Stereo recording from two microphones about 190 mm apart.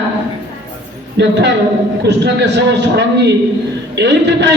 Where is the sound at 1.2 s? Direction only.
65° right (ahead or behind).